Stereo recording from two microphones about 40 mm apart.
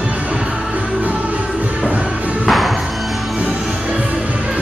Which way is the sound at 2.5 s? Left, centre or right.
Centre.